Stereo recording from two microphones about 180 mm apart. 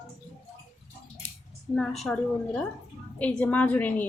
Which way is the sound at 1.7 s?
Centre (ahead or behind).